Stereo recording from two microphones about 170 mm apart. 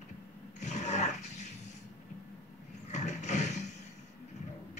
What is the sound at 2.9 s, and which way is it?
Mechanisms, 45° left (ahead or behind).